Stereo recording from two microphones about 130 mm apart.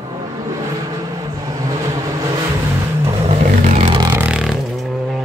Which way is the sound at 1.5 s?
25° right (ahead or behind).